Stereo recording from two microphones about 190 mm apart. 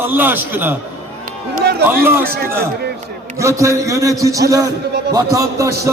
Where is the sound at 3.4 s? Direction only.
15° right (ahead or behind).